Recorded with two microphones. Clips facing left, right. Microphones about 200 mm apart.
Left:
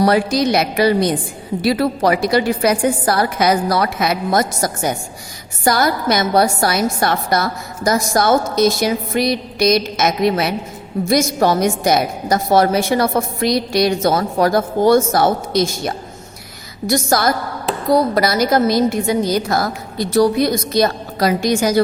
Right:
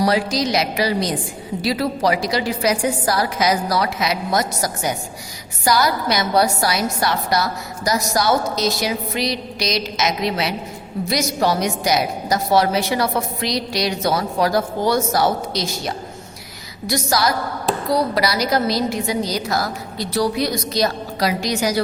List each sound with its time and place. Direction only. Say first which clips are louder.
0.0 s a woman's voice: left 4 dB; 55° left (ahead or behind)